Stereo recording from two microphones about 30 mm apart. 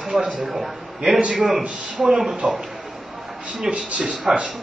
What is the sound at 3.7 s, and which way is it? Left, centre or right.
Speech, right.